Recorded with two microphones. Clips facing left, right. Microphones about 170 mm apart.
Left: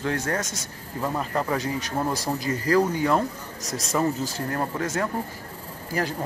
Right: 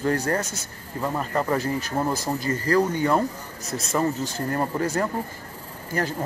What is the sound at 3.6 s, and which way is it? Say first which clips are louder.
Speech: right 1 dB; 30° right (ahead or behind).